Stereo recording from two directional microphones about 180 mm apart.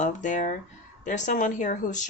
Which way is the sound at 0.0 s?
45° left (ahead or behind).